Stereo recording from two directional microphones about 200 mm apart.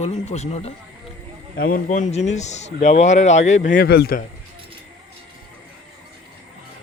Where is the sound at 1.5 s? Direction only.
45° left (ahead or behind).